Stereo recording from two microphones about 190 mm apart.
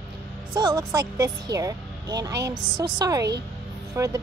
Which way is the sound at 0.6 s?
20° right (ahead or behind).